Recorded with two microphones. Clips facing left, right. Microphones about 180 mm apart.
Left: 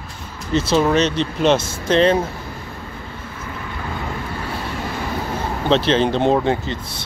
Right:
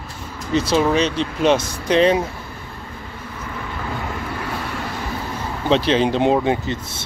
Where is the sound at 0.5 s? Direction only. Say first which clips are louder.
Left 1 dB; 15° right (ahead or behind).